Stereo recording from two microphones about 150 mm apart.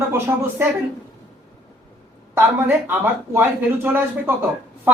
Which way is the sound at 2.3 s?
15° right (ahead or behind).